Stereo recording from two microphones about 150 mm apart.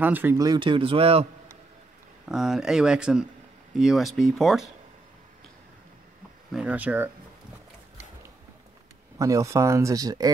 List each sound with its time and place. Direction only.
0.0 s speech: 15° right (ahead or behind)
0.4 s speech: 30° right (ahead or behind)
2.2 s speech: 5° right (ahead or behind)
6.5 s speech: 10° right (ahead or behind)
9.2 s speech: 20° right (ahead or behind)